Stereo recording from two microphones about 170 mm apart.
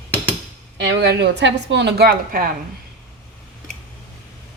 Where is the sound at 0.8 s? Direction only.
75° right (ahead or behind).